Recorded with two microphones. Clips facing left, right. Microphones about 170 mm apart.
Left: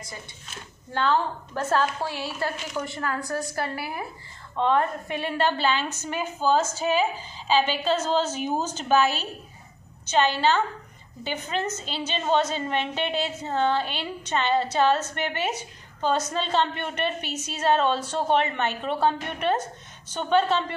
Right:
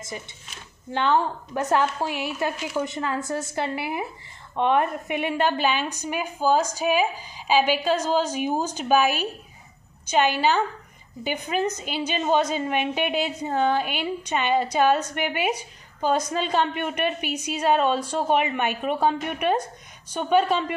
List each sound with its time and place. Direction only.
0.9 s a woman's voice: 20° right (ahead or behind)